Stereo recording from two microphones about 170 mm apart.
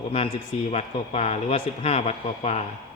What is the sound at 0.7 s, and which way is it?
Speech, 40° left (ahead or behind).